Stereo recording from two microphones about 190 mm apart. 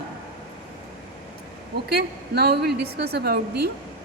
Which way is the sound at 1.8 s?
55° right (ahead or behind).